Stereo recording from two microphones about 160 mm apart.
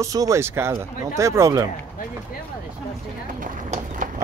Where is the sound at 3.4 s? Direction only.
55° right (ahead or behind).